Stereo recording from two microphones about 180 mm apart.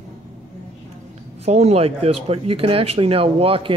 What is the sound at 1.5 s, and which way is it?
Speech, 40° right (ahead or behind).